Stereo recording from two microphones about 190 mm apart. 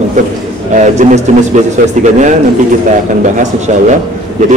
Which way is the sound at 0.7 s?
40° right (ahead or behind).